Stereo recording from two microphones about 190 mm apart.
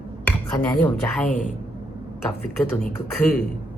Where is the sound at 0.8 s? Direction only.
5° left (ahead or behind).